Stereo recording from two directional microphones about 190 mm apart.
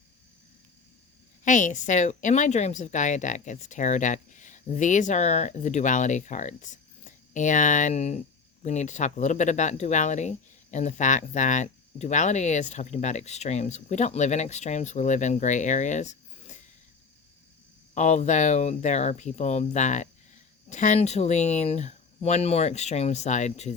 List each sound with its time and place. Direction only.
1.5 s speech: 40° left (ahead or behind)
17.9 s speech: 35° left (ahead or behind)